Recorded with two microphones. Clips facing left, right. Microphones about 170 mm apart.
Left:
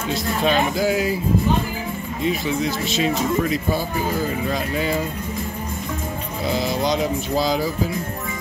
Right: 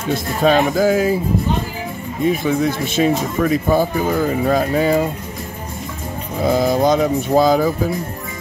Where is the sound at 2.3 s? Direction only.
50° right (ahead or behind).